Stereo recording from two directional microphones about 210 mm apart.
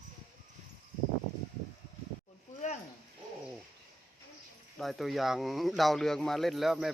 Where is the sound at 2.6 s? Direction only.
35° left (ahead or behind).